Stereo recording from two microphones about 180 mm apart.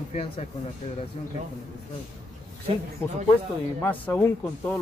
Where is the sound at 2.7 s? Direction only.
35° right (ahead or behind).